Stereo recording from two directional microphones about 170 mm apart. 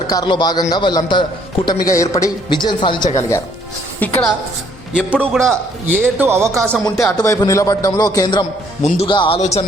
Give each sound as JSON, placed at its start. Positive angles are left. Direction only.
{"t": 0.1, "sound": "a man's voice", "side_deg": 25}
{"t": 3.2, "sound": "speech", "side_deg": 15}
{"t": 4.0, "sound": "a man's voice", "side_deg": 5}
{"t": 5.9, "sound": "a man's voice", "side_deg": -10}
{"t": 6.8, "sound": "a man's voice", "side_deg": 20}
{"t": 8.8, "sound": "a man's voice", "side_deg": 35}
{"t": 9.4, "sound": "a man's voice", "side_deg": 40}